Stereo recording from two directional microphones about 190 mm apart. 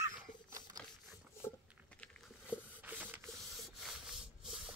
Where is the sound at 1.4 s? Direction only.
15° left (ahead or behind).